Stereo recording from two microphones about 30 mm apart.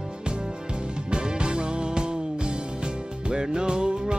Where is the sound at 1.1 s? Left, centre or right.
Right.